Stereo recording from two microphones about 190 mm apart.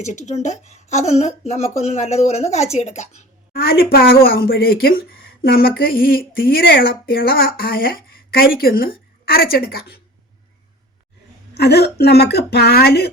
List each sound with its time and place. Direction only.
0.0 s a woman's voice: 40° left (ahead or behind)
3.5 s speech: 55° left (ahead or behind)
11.5 s a woman's voice: 60° left (ahead or behind)